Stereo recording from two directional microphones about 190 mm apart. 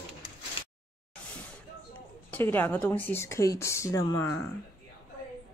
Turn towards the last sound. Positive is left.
turn(degrees=15)  # may be behind; listen again after turning